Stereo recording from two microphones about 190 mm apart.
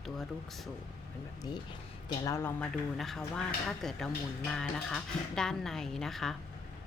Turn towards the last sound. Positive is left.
turn(degrees=0)  # may be behind; listen again after turning